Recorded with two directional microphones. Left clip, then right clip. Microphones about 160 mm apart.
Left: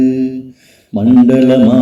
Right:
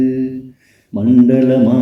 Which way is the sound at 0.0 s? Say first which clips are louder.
Left 3 dB; 25° left (ahead or behind).